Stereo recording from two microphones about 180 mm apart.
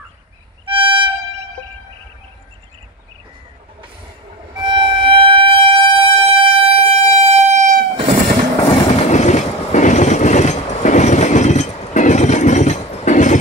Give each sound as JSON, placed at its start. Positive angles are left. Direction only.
{"t": 0.7, "sound": "violin", "side_deg": -30}
{"t": 4.6, "sound": "music", "side_deg": -25}
{"t": 8.6, "sound": "train", "side_deg": 35}